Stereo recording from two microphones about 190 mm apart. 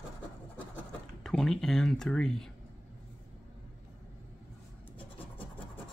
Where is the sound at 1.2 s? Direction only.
Centre (ahead or behind).